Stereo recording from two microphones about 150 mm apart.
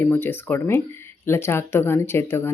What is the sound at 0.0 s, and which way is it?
Speech, 15° left (ahead or behind).